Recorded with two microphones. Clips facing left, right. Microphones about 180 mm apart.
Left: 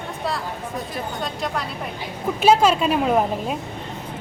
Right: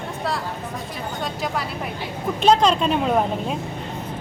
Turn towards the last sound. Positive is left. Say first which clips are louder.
# left 1 dB
turn(degrees=5)  # may be behind; listen again after turning